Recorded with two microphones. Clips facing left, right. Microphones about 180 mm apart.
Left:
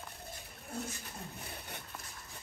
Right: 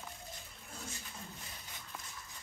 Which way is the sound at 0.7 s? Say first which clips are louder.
Left 7 dB; 60° left (ahead or behind).